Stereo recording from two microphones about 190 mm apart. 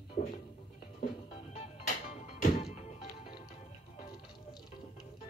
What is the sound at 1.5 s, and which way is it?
Music, 35° left (ahead or behind).